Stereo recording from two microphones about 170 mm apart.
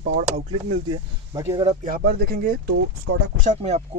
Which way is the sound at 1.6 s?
50° right (ahead or behind).